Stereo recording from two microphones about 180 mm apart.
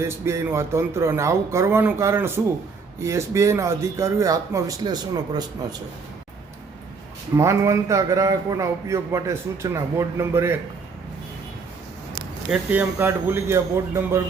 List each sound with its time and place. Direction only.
0.0 s a man's voice: 15° right (ahead or behind)
7.3 s a man's voice: 15° right (ahead or behind)
12.5 s a man's voice: 10° right (ahead or behind)